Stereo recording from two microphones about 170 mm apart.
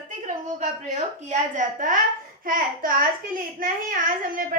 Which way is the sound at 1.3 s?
50° right (ahead or behind).